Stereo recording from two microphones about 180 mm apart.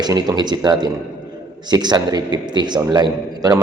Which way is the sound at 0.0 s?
20° right (ahead or behind).